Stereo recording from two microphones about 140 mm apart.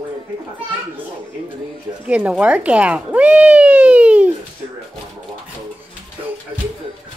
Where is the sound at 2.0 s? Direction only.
10° right (ahead or behind).